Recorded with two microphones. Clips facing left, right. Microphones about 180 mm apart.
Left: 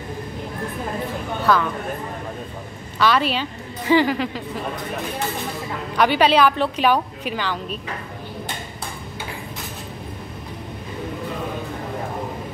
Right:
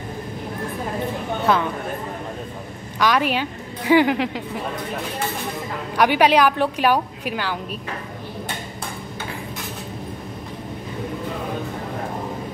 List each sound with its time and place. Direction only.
1.4 s speech: 25° right (ahead or behind)
3.0 s a woman's voice: 15° right (ahead or behind)
5.9 s a woman's voice: 10° right (ahead or behind)